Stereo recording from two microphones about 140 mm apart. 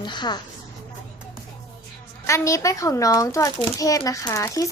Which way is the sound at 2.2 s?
20° left (ahead or behind).